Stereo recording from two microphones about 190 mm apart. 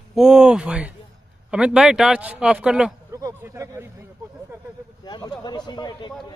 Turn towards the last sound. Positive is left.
turn(degrees=20)  # may be behind; listen again after turning